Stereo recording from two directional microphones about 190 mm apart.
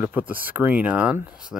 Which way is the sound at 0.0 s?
10° right (ahead or behind).